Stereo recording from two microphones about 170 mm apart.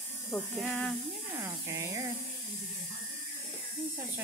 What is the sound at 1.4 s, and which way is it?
Speech, 15° right (ahead or behind).